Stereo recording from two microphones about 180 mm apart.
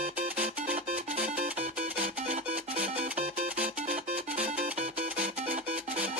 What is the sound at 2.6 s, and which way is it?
Music, 10° right (ahead or behind).